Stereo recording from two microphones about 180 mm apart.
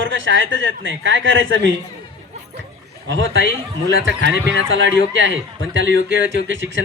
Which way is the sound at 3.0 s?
90° right.